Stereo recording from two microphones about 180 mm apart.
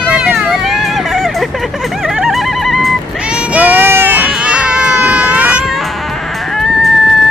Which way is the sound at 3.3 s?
10° right (ahead or behind).